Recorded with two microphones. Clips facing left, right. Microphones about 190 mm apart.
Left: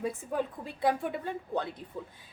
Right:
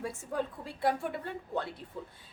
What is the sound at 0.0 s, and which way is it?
A woman's voice, 20° left (ahead or behind).